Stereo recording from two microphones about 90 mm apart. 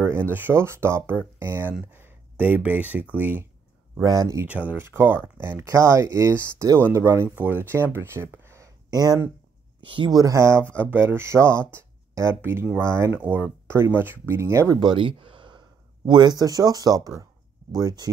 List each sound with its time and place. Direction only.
0.0 s speech: 25° right (ahead or behind)
4.0 s speech: 40° right (ahead or behind)
4.5 s speech: 15° right (ahead or behind)
7.2 s speech: 20° right (ahead or behind)
8.9 s speech: 45° right (ahead or behind)
9.8 s speech: 65° right (ahead or behind)
10.1 s speech: 45° right (ahead or behind)
10.4 s speech: 30° right (ahead or behind)
13.1 s speech: 20° right (ahead or behind)
14.8 s speech: 70° right (ahead or behind)
16.1 s speech: 55° right (ahead or behind)